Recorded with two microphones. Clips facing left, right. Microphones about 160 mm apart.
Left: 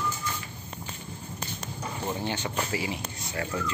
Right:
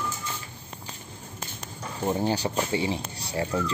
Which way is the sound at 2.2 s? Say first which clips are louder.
Right 5 dB; 35° right (ahead or behind).